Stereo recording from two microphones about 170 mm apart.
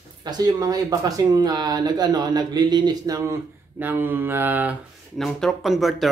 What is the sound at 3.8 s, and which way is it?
Mantra, 10° right (ahead or behind).